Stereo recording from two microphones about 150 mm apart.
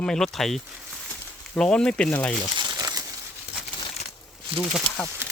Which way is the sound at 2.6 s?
25° right (ahead or behind).